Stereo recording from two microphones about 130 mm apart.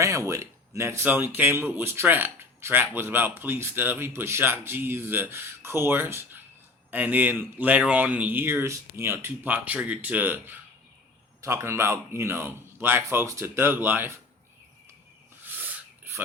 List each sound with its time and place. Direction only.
0.0 s speech: 25° right (ahead or behind)
16.1 s dog: 15° right (ahead or behind)